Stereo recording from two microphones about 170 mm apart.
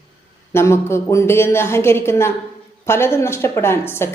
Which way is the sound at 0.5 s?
15° left (ahead or behind).